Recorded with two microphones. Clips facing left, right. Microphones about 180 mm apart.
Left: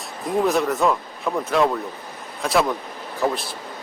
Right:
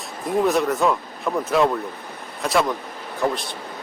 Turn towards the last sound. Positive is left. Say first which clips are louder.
# even
turn(degrees=0)  # may be behind; listen again after turning